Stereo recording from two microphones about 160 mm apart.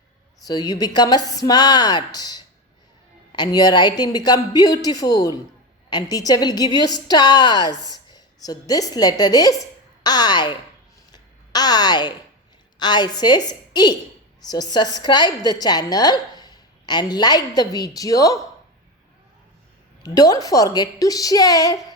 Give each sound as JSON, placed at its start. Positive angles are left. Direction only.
{"t": 0.4, "sound": "a woman's voice", "side_deg": 25}
{"t": 7.8, "sound": "speech", "side_deg": -25}
{"t": 8.1, "sound": "a woman's voice", "side_deg": 25}
{"t": 11.1, "sound": "a sound", "side_deg": 25}
{"t": 12.8, "sound": "a woman's voice", "side_deg": 25}
{"t": 20.0, "sound": "a woman's voice", "side_deg": 25}